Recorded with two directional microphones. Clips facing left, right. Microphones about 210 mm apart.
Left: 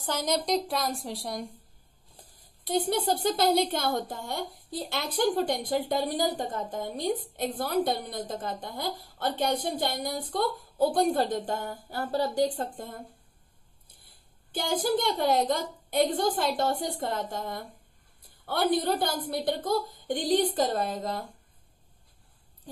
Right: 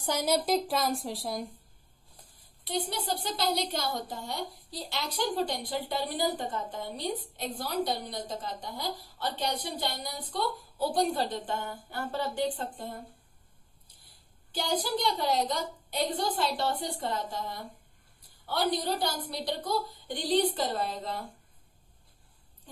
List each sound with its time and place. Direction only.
0.0 s a woman's voice: 10° right (ahead or behind)
2.6 s a woman's voice: 45° left (ahead or behind)
14.5 s a woman's voice: 50° left (ahead or behind)